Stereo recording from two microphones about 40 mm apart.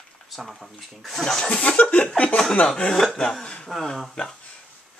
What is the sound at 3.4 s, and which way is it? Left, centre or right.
Speech, left.